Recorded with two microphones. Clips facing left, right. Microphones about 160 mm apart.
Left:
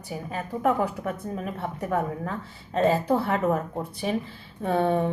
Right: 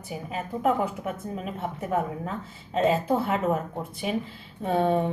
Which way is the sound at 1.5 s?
25° right (ahead or behind).